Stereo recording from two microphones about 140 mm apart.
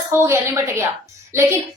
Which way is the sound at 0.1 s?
20° right (ahead or behind).